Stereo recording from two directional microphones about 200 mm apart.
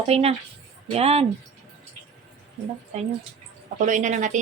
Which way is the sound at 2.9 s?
35° right (ahead or behind).